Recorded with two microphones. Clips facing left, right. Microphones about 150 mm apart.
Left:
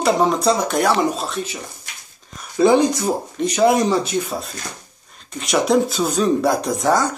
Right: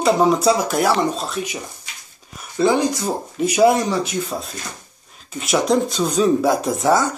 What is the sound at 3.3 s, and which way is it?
Speech, 5° right (ahead or behind).